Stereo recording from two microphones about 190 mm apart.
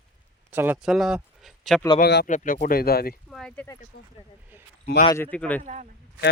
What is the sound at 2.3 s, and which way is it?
Speech, 40° left (ahead or behind).